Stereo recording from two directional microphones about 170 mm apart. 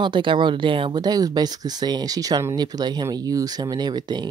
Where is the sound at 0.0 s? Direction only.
30° right (ahead or behind).